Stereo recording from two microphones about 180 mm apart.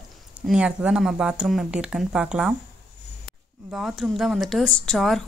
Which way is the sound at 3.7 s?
Centre (ahead or behind).